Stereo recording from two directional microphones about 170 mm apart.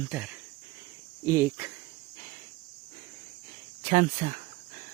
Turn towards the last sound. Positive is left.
turn(degrees=-40)  # may be behind; listen again after turning